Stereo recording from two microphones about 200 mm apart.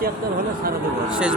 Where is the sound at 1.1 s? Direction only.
5° right (ahead or behind).